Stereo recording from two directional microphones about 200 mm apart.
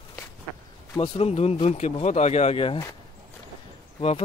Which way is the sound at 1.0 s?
30° left (ahead or behind).